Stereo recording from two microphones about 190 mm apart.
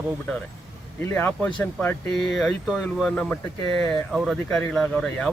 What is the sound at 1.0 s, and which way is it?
Speech, 10° left (ahead or behind).